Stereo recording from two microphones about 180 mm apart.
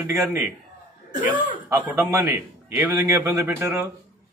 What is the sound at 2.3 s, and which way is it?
A man's voice, 15° right (ahead or behind).